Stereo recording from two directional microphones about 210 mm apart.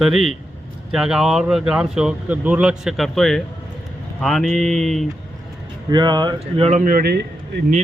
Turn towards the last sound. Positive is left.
turn(degrees=-50)  # may be behind; listen again after turning